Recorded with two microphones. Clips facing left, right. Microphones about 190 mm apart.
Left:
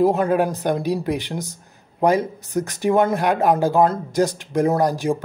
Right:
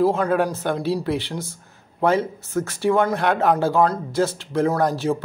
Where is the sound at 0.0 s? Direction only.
20° left (ahead or behind).